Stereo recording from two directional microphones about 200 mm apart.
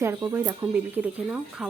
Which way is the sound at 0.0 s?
15° right (ahead or behind).